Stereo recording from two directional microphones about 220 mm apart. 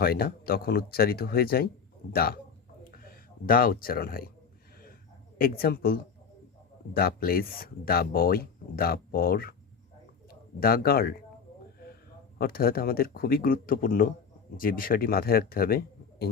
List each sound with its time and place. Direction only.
0.0 s speech: 45° left (ahead or behind)
2.8 s a sound: 40° left (ahead or behind)
5.4 s a man's voice: 45° left (ahead or behind)
12.4 s speech: 45° left (ahead or behind)